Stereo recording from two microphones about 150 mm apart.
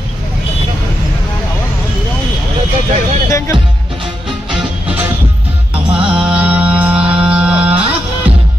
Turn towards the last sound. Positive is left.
turn(degrees=-5)  # may be behind; listen again after turning